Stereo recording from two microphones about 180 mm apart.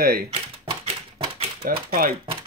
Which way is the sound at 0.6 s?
35° right (ahead or behind).